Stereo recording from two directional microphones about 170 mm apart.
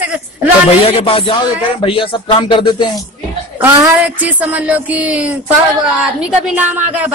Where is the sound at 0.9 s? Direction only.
35° left (ahead or behind).